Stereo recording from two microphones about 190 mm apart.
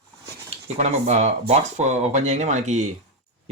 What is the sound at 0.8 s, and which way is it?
Speech, 35° right (ahead or behind).